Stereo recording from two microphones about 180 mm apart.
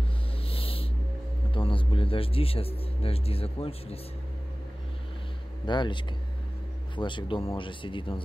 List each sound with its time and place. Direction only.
0.5 s a sound: 30° left (ahead or behind)
1.5 s speech: 30° left (ahead or behind)
5.7 s speech: 25° left (ahead or behind)